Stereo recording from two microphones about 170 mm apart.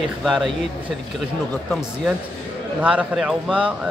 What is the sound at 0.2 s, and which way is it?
Speech, centre (ahead or behind).